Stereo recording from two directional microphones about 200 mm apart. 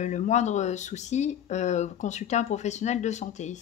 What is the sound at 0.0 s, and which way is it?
Speech, 35° left (ahead or behind).